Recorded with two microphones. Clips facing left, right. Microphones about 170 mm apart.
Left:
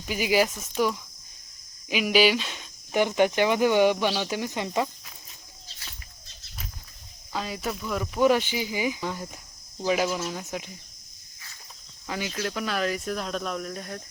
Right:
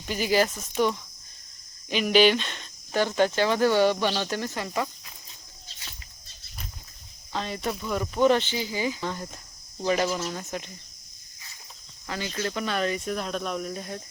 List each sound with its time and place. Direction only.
0.0 s speech: 10° left (ahead or behind)
2.9 s speech: 15° left (ahead or behind)
7.3 s speech: 5° left (ahead or behind)
12.0 s speech: 15° left (ahead or behind)
12.3 s speech: centre (ahead or behind)